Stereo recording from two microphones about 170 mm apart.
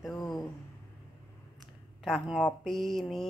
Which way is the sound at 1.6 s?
Centre (ahead or behind).